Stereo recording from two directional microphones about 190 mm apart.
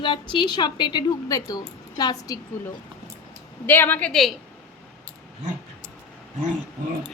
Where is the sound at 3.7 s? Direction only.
10° left (ahead or behind).